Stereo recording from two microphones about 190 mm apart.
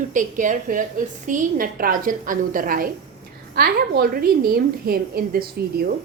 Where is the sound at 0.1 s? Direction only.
40° right (ahead or behind).